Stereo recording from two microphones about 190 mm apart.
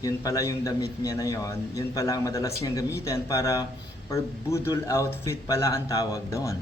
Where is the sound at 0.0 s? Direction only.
20° left (ahead or behind).